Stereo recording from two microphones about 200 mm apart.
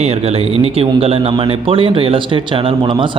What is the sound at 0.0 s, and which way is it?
Speech, 30° right (ahead or behind).